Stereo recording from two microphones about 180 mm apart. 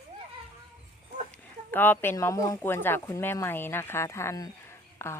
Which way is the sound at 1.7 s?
10° left (ahead or behind).